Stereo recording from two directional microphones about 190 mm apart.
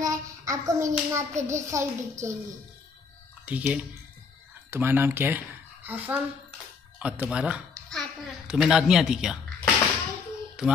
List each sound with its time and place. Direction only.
0.0 s a child's voice: 15° right (ahead or behind)
3.4 s speech: 10° right (ahead or behind)